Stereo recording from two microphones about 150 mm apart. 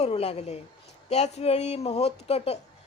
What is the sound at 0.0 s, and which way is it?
Speech, 40° left (ahead or behind).